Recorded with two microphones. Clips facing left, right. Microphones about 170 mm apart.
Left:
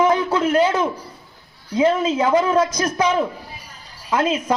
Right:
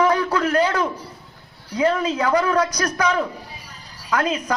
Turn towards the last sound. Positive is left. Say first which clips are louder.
# left 2 dB
turn(degrees=25)  # may be behind; listen again after turning